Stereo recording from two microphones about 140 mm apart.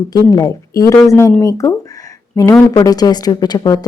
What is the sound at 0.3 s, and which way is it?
Speech, 25° left (ahead or behind).